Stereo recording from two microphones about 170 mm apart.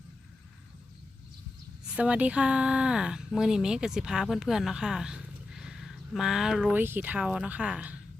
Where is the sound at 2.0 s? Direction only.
10° right (ahead or behind).